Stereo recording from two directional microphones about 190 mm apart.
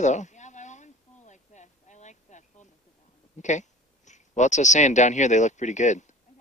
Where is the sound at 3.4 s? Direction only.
40° left (ahead or behind).